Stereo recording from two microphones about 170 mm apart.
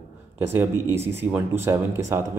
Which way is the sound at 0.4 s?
15° right (ahead or behind).